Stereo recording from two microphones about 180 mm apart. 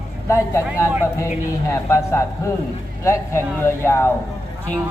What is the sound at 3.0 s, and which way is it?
Speech, 15° left (ahead or behind).